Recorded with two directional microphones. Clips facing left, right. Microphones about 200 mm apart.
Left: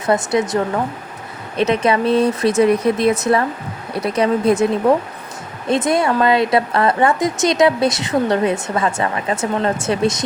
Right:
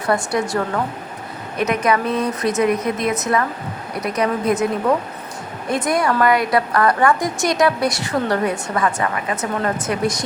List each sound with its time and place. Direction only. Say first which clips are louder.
0.1 s a woman's voice: left 3 dB; 20° left (ahead or behind)